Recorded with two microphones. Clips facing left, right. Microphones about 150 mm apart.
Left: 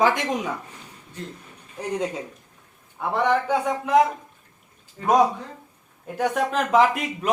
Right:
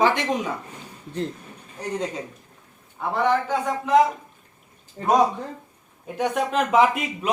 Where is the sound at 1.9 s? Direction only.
5° left (ahead or behind).